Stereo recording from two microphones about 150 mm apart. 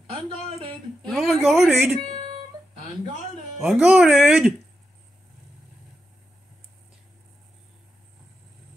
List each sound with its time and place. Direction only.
1.0 s speech: centre (ahead or behind)
2.0 s a sound: 35° right (ahead or behind)
3.5 s speech: 5° right (ahead or behind)